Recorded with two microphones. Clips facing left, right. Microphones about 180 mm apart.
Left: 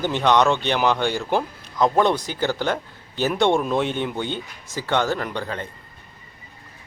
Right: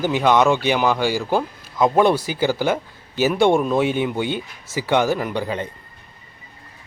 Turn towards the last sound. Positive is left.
turn(degrees=-15)  # may be behind; listen again after turning